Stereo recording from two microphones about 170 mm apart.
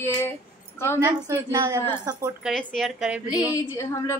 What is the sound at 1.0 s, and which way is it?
A woman's voice, 15° right (ahead or behind).